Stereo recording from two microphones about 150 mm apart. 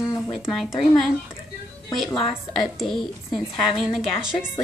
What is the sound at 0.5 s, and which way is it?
Speech, centre (ahead or behind).